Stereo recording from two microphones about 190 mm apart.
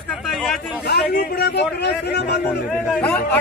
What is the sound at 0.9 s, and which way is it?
A man's voice, 60° left (ahead or behind).